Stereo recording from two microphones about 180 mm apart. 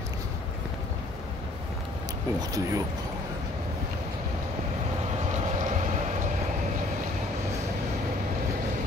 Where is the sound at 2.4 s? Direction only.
20° right (ahead or behind).